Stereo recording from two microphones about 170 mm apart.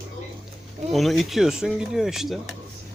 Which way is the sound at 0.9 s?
Centre (ahead or behind).